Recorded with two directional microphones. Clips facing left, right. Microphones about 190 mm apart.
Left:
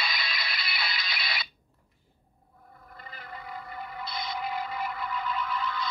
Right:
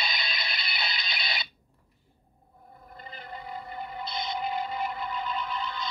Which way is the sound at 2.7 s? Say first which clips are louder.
Right 2 dB; 20° right (ahead or behind).